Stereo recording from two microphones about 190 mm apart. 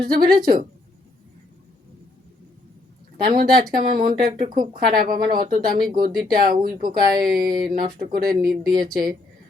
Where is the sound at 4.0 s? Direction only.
50° right (ahead or behind).